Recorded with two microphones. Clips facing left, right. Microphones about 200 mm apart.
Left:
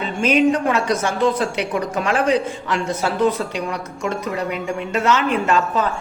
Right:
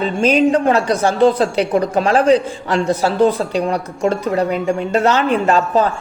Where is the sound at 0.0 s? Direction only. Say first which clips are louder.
Right 3 dB; 35° right (ahead or behind).